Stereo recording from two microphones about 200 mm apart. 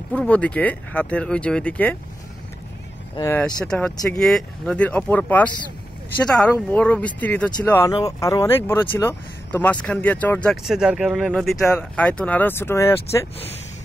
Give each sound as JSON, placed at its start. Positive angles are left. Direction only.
{"t": 0.1, "sound": "speech", "side_deg": 5}
{"t": 3.2, "sound": "speech", "side_deg": 10}
{"t": 10.5, "sound": "speech", "side_deg": -5}